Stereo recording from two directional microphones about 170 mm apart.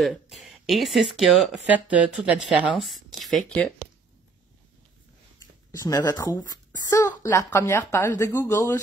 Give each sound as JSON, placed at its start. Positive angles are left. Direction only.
{"t": 0.0, "sound": "speech", "side_deg": 0}
{"t": 5.7, "sound": "speech", "side_deg": 20}